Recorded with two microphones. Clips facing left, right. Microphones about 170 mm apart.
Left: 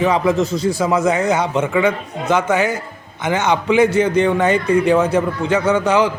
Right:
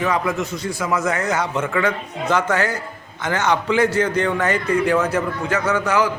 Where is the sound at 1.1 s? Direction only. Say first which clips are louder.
Left 5 dB; 15° left (ahead or behind).